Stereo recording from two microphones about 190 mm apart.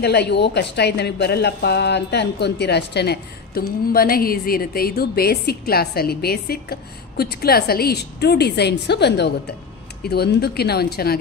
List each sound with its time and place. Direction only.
0.0 s speech: 60° left (ahead or behind)